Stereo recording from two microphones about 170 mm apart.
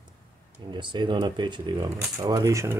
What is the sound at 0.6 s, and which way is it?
Speech, 25° right (ahead or behind).